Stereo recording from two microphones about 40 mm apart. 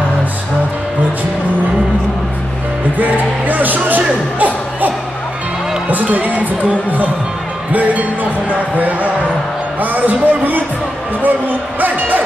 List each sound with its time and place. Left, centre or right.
3.0 s music: right
5.9 s speech: right